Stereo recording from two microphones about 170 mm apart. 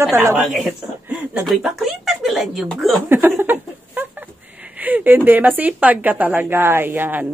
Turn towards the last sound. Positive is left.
turn(degrees=-10)  # may be behind; listen again after turning